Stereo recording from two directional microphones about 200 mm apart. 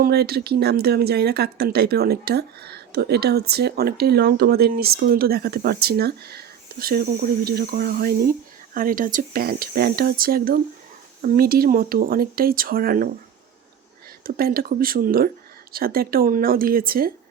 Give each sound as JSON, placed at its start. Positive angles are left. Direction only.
{"t": 0.0, "sound": "speech", "side_deg": -55}
{"t": 14.3, "sound": "speech", "side_deg": -50}